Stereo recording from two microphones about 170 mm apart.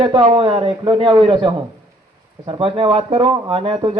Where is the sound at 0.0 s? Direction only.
30° right (ahead or behind).